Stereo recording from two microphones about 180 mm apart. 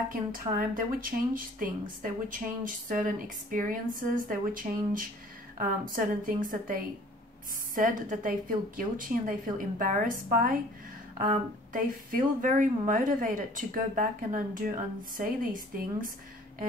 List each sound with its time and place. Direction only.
0.1 s speech: 50° right (ahead or behind)
11.1 s speech: 45° right (ahead or behind)